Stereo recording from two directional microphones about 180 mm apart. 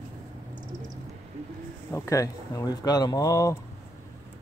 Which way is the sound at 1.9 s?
15° left (ahead or behind).